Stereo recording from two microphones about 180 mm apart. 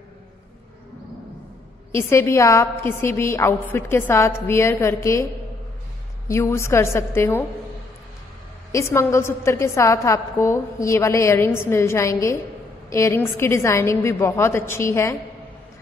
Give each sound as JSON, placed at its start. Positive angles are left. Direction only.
{"t": 1.9, "sound": "a woman's voice", "side_deg": 15}
{"t": 6.2, "sound": "a woman's voice", "side_deg": 15}
{"t": 8.7, "sound": "a woman's voice", "side_deg": 15}